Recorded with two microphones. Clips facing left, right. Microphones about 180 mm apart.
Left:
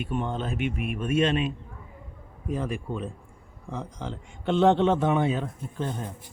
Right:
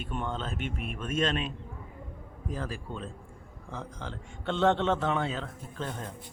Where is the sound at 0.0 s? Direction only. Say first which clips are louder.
Left 5 dB; 10° left (ahead or behind).